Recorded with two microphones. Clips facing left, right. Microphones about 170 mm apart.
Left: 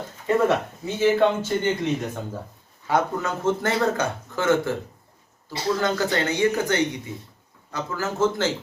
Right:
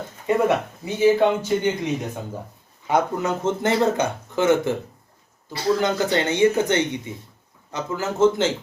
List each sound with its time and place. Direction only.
0.3 s speech: 15° right (ahead or behind)
5.8 s speech: 20° right (ahead or behind)